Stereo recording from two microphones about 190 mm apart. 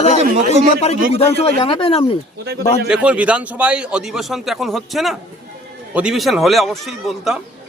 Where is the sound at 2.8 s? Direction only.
5° right (ahead or behind).